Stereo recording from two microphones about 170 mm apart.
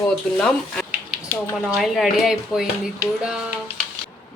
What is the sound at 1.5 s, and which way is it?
Speech, centre (ahead or behind).